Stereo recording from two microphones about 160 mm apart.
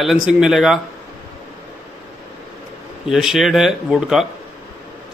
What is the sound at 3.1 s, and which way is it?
Speech, centre (ahead or behind).